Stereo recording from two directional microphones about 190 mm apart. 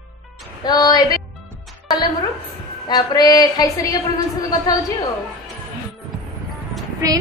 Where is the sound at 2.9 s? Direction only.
20° left (ahead or behind).